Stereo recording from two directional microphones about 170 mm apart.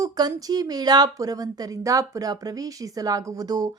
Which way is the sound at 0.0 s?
20° right (ahead or behind).